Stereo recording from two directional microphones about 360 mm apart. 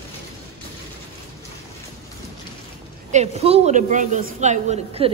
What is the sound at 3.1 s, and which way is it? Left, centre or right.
A woman's voice, centre.